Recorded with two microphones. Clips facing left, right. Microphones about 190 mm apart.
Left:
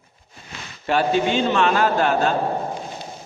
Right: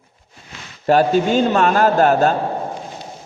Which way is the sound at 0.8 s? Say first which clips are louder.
Right 5 dB; 40° right (ahead or behind).